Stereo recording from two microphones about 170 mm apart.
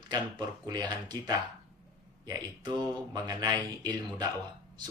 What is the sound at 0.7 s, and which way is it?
Speech, 25° right (ahead or behind).